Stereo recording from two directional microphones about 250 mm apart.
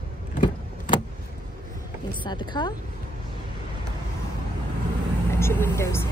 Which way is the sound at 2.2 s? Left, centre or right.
Centre.